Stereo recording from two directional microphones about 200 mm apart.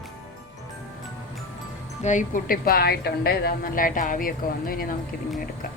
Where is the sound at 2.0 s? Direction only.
40° left (ahead or behind).